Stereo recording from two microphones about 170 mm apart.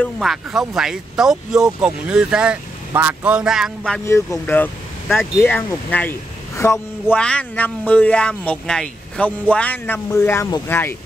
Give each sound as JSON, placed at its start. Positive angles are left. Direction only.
{"t": 0.2, "sound": "speech", "side_deg": 0}
{"t": 4.0, "sound": "speech", "side_deg": 15}